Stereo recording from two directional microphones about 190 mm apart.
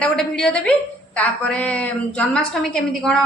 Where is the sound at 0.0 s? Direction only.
5° left (ahead or behind).